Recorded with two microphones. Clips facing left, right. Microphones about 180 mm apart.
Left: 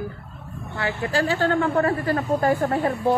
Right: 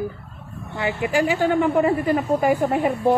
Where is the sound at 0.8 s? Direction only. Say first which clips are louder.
Right 3 dB; 15° right (ahead or behind).